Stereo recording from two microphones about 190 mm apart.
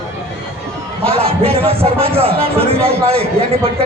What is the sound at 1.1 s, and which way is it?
A man's voice, 30° right (ahead or behind).